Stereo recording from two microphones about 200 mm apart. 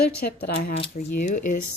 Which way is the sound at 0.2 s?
50° left (ahead or behind).